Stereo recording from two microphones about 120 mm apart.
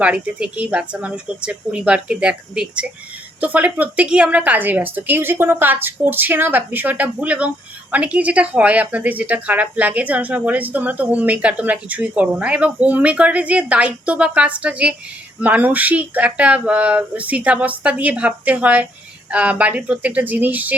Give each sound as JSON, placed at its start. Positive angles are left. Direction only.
{"t": 0.0, "sound": "a woman's voice", "side_deg": -10}